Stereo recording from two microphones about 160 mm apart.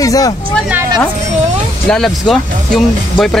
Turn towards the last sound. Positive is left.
turn(degrees=5)  # may be behind; listen again after turning